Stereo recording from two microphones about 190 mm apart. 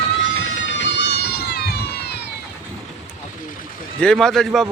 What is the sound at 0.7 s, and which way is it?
Run, 70° left (ahead or behind).